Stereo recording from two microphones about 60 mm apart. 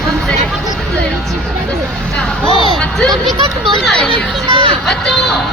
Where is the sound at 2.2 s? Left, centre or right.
Centre.